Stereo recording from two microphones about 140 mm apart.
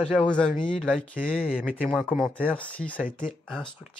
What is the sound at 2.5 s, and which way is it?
Speech, 10° left (ahead or behind).